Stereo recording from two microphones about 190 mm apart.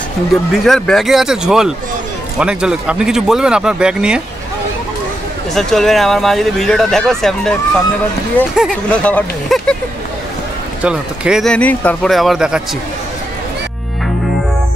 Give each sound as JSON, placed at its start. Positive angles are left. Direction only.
{"t": 0.5, "sound": "speech", "side_deg": 0}
{"t": 5.5, "sound": "speech", "side_deg": 0}
{"t": 8.5, "sound": "speech", "side_deg": 5}
{"t": 10.8, "sound": "speech", "side_deg": -5}